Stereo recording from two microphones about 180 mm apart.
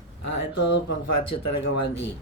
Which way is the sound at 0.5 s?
70° left (ahead or behind).